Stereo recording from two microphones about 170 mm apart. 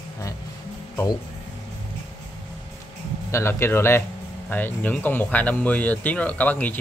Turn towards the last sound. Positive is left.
turn(degrees=10)  # may be behind; listen again after turning